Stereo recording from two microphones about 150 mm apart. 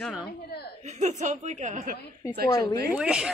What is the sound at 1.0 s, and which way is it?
Speech, 55° right (ahead or behind).